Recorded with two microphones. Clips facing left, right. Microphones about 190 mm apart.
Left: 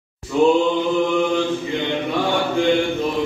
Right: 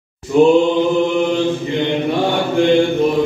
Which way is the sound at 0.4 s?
70° right (ahead or behind).